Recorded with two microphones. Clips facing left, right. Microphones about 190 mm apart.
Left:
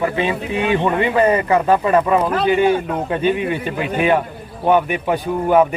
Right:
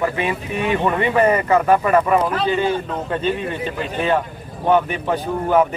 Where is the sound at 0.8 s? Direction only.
20° left (ahead or behind).